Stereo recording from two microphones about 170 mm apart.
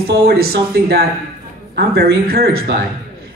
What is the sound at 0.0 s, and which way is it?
A man's voice, 65° right (ahead or behind).